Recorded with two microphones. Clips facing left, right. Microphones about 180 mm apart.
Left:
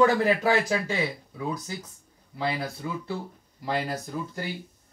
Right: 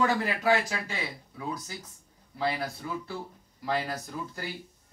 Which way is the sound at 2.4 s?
25° left (ahead or behind).